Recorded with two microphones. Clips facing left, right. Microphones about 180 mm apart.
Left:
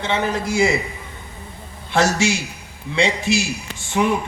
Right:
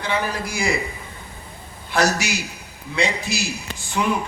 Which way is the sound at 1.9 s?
25° left (ahead or behind).